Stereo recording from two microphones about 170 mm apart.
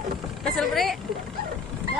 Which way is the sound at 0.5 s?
Centre (ahead or behind).